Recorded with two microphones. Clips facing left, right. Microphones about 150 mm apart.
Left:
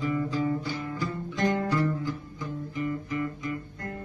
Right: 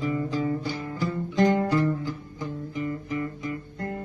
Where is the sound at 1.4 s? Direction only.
30° right (ahead or behind).